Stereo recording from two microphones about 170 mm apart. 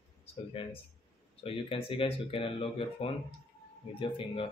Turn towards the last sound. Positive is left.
turn(degrees=30)  # may be behind; listen again after turning